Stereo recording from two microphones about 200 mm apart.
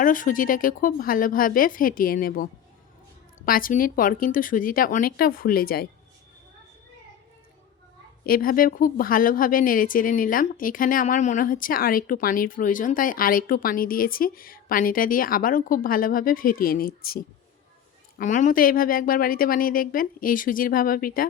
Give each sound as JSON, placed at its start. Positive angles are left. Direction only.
{"t": 0.0, "sound": "a woman's voice", "side_deg": 40}
{"t": 8.2, "sound": "a woman's voice", "side_deg": 45}